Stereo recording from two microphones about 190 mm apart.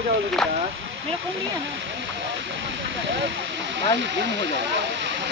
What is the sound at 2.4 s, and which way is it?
Hiss, 75° right (ahead or behind).